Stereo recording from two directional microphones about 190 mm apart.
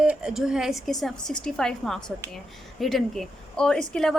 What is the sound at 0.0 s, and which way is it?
Speech, 5° right (ahead or behind).